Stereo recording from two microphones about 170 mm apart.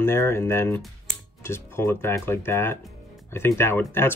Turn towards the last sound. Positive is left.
turn(degrees=15)  # may be behind; listen again after turning